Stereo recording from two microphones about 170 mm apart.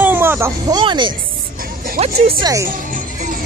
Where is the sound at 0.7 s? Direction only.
25° right (ahead or behind).